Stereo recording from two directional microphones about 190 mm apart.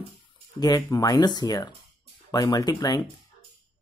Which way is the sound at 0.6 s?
20° left (ahead or behind).